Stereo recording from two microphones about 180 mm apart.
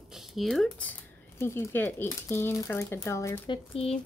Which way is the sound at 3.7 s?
30° left (ahead or behind).